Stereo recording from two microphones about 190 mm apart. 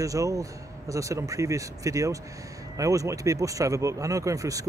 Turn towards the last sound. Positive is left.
turn(degrees=-15)  # may be behind; listen again after turning